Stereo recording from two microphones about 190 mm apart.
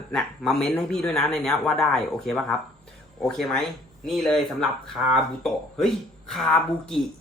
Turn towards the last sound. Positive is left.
turn(degrees=0)  # may be behind; listen again after turning